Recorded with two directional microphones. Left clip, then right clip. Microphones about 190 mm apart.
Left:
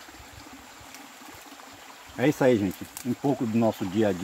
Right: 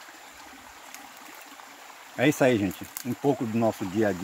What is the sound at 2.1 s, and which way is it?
Speech, 55° right (ahead or behind).